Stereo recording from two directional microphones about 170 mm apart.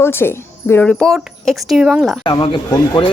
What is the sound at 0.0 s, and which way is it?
Speech, 15° left (ahead or behind).